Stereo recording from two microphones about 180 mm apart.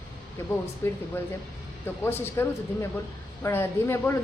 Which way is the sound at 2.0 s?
10° left (ahead or behind).